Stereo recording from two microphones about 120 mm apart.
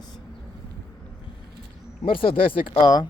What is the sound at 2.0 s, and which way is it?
Speech, 50° left (ahead or behind).